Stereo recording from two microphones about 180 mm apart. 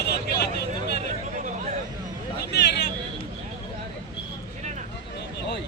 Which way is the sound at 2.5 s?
70° left (ahead or behind).